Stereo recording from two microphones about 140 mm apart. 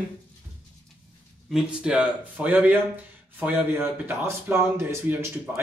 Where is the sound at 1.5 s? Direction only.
5° right (ahead or behind).